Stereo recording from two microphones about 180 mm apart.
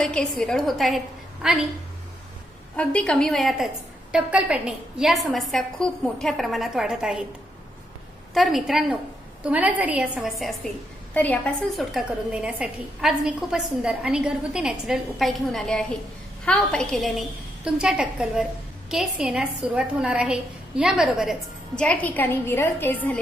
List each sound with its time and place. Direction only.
0.0 s a woman's voice: 5° left (ahead or behind)
2.7 s a woman's voice: 5° left (ahead or behind)
8.4 s a woman's voice: centre (ahead or behind)